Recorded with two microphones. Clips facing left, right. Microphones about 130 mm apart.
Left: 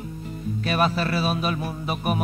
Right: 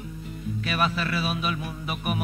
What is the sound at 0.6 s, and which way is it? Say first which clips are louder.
Mantra: left 4 dB; 40° left (ahead or behind).